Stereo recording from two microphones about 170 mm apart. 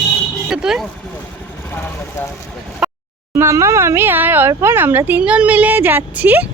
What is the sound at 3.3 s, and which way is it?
Speech, 15° right (ahead or behind).